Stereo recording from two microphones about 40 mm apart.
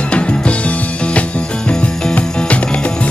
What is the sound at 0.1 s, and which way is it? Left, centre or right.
Music, left.